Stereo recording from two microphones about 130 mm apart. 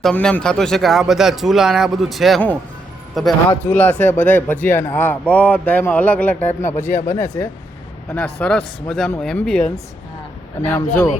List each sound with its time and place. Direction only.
0.0 s speech: 5° left (ahead or behind)
3.6 s speech: 15° left (ahead or behind)
8.1 s speech: 10° left (ahead or behind)
10.6 s speech: 20° left (ahead or behind)